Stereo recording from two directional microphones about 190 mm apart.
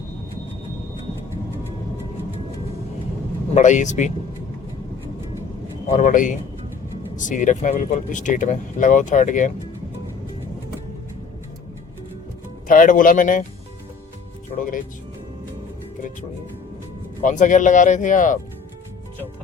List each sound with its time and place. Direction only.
3.5 s speech: 40° left (ahead or behind)
5.9 s speech: 40° left (ahead or behind)
12.6 s speech: 45° left (ahead or behind)
14.5 s speech: 45° left (ahead or behind)
17.2 s speech: 40° left (ahead or behind)